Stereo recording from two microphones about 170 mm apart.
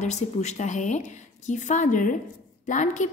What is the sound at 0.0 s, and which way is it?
A woman's voice, 40° left (ahead or behind).